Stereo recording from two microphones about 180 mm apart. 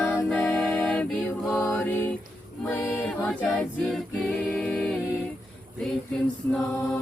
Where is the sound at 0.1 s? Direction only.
5° left (ahead or behind).